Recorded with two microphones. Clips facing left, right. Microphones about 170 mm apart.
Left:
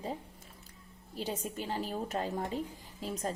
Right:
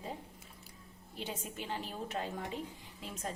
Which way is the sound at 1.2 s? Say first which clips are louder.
Left 5 dB; 40° left (ahead or behind).